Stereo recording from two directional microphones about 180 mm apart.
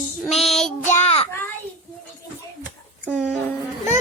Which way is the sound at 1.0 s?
35° left (ahead or behind).